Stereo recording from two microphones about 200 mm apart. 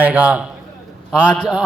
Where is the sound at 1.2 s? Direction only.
5° left (ahead or behind).